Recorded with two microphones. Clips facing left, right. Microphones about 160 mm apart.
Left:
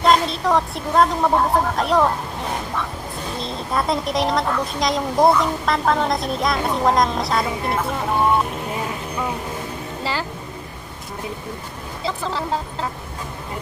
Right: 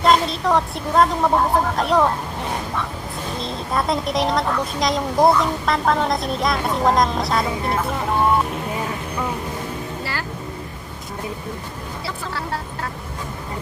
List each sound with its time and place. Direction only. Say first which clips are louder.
0.0 s a woman's voice: even; centre (ahead or behind)
3.3 s a woman's voice: even; centre (ahead or behind)
10.0 s speech: left 8 dB; 15° left (ahead or behind)